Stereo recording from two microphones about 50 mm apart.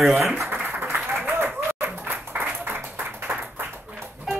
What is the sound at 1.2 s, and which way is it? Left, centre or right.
Applause, right.